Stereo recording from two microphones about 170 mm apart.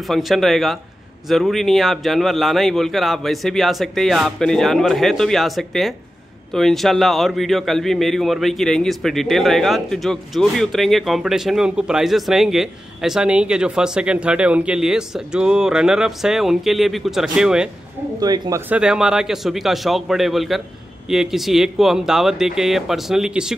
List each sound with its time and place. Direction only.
0.1 s speech: centre (ahead or behind)
18.2 s speech: 20° right (ahead or behind)
18.7 s speech: 5° right (ahead or behind)